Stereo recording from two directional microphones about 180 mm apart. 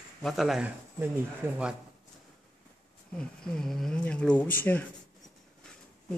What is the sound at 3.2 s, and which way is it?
Speech, 5° left (ahead or behind).